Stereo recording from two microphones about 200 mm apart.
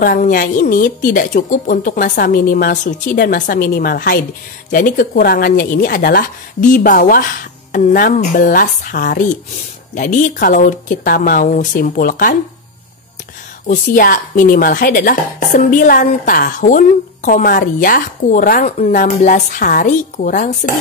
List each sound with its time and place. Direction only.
0.0 s a woman's voice: 45° left (ahead or behind)
13.7 s speech: 45° left (ahead or behind)